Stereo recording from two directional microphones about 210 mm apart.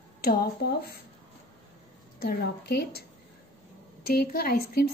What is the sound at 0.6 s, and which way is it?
Speech, 50° left (ahead or behind).